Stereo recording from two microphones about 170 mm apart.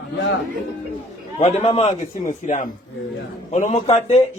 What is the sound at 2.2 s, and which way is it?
A man's voice, 50° left (ahead or behind).